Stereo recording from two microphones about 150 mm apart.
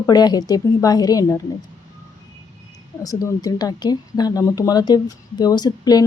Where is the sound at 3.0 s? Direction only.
25° left (ahead or behind).